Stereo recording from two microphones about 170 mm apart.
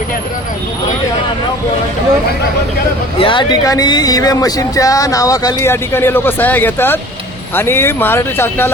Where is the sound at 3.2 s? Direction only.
30° left (ahead or behind).